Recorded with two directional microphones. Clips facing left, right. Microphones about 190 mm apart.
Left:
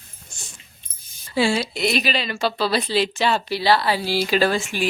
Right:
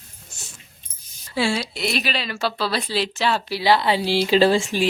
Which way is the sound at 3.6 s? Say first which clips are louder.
Right 2 dB; 20° right (ahead or behind).